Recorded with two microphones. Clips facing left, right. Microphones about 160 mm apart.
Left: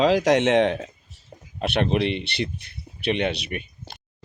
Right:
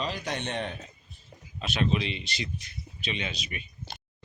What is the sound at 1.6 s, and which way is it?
Speech, 60° left (ahead or behind).